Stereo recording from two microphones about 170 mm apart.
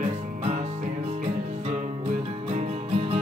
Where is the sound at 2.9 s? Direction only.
35° right (ahead or behind).